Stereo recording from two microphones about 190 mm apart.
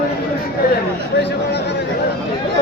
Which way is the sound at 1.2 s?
60° left (ahead or behind).